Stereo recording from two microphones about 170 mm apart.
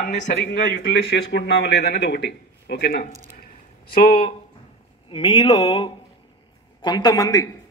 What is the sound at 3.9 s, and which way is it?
Speech, 55° left (ahead or behind).